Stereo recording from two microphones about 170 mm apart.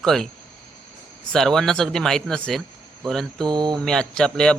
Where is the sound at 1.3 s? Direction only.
Centre (ahead or behind).